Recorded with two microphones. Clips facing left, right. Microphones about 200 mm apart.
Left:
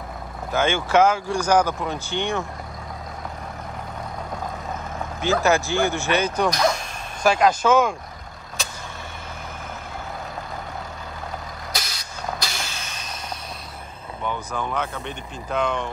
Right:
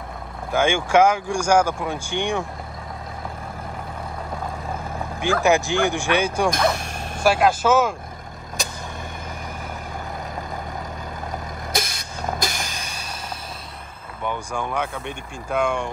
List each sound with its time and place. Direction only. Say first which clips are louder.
0.5 s speech: right 2 dB; 10° right (ahead or behind)
5.2 s speech: right 1 dB; 15° right (ahead or behind)
11.7 s vehicle: right 7 dB; 50° right (ahead or behind)
14.2 s speech: right 1 dB; 15° right (ahead or behind)